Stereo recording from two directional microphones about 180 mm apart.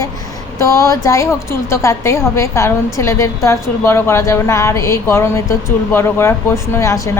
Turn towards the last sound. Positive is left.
turn(degrees=15)  # may be behind; listen again after turning